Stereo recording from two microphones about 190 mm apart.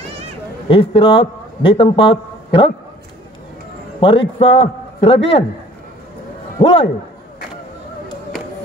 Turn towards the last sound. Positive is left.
turn(degrees=25)  # may be behind; listen again after turning